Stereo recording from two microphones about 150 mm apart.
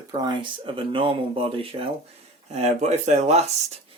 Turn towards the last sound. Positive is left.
turn(degrees=-50)  # may be behind; listen again after turning